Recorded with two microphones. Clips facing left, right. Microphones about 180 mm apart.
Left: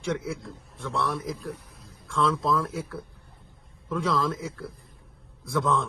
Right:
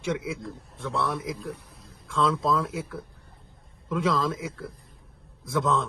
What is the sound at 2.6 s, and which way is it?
Speech, 5° right (ahead or behind).